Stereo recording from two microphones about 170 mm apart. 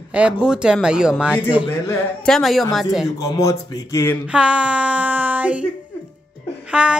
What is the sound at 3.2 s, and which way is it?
Speech, 20° left (ahead or behind).